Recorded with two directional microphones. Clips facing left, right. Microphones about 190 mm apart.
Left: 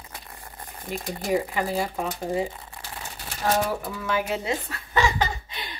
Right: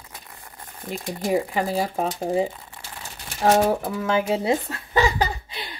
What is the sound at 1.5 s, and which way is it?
Speech, 35° right (ahead or behind).